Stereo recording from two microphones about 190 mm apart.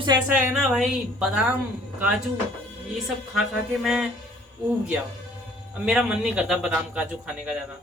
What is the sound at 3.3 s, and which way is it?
Speech, centre (ahead or behind).